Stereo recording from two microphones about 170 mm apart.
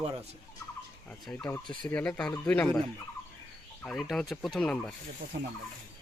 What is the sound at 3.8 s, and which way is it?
Speech, centre (ahead or behind).